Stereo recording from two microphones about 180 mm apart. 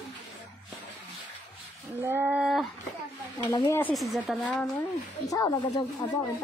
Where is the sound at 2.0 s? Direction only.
10° right (ahead or behind).